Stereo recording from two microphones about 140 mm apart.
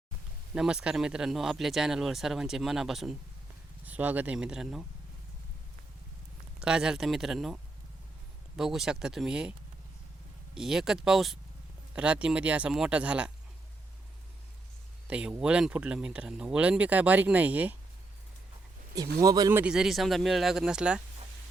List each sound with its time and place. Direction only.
0.5 s speech: 5° right (ahead or behind)
6.6 s speech: 5° right (ahead or behind)
15.0 s speech: 10° right (ahead or behind)
19.2 s speech: 25° right (ahead or behind)
19.5 s speech: 5° right (ahead or behind)